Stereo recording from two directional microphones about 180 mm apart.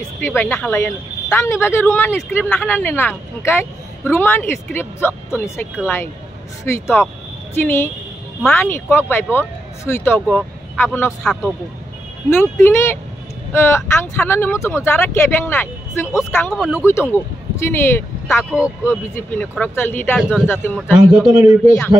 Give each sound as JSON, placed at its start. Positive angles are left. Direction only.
{"t": 0.2, "sound": "speech", "side_deg": 10}
{"t": 11.1, "sound": "a man's voice", "side_deg": 0}
{"t": 12.3, "sound": "speech", "side_deg": 15}
{"t": 16.5, "sound": "a man's voice", "side_deg": -5}
{"t": 17.1, "sound": "speech", "side_deg": 15}
{"t": 18.4, "sound": "a man's voice", "side_deg": -5}
{"t": 19.1, "sound": "speech", "side_deg": 5}
{"t": 20.2, "sound": "a man's voice", "side_deg": 0}
{"t": 20.4, "sound": "speech", "side_deg": 10}
{"t": 20.9, "sound": "a man's voice", "side_deg": -10}